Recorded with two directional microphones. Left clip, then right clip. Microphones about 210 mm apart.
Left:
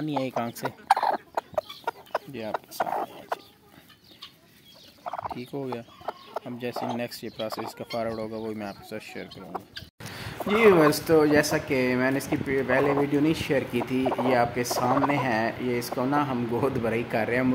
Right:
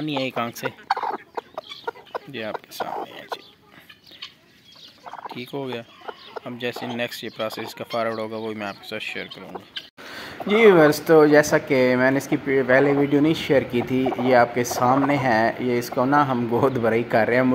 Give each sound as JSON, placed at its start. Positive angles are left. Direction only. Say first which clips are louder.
{"t": 0.0, "sound": "speech", "louder": "right 3 dB", "side_deg": 5}
{"t": 0.8, "sound": "chicken", "louder": "left 3 dB", "side_deg": 25}
{"t": 2.1, "sound": "speech", "louder": "right 1 dB", "side_deg": 0}
{"t": 5.0, "sound": "turkey", "louder": "left 3 dB", "side_deg": 25}
{"t": 5.3, "sound": "speech", "louder": "right 3 dB", "side_deg": 0}
{"t": 10.5, "sound": "speech", "louder": "right 5 dB", "side_deg": -15}
{"t": 14.0, "sound": "speech", "louder": "right 3 dB", "side_deg": 15}
{"t": 14.3, "sound": "speech", "louder": "right 10 dB", "side_deg": -15}